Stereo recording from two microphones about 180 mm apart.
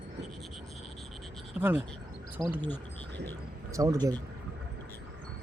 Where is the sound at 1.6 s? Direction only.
10° right (ahead or behind).